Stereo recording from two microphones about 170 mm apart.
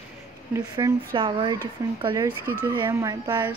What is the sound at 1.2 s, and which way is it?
Speech, 30° right (ahead or behind).